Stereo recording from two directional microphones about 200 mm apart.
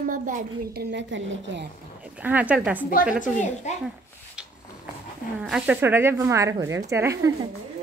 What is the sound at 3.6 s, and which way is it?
Speech, 35° left (ahead or behind).